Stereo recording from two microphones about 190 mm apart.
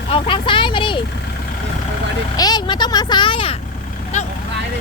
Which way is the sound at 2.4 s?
20° left (ahead or behind).